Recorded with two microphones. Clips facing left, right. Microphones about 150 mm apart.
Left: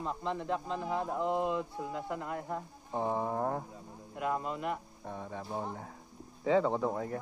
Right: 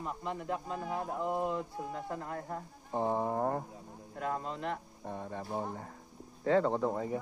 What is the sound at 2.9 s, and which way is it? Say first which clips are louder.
Speech: right 1 dB; 10° right (ahead or behind).